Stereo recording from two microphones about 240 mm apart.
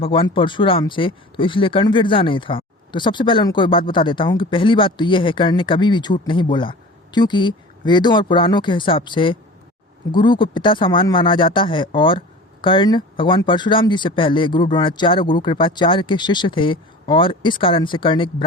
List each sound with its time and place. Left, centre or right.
0.0 s speech: left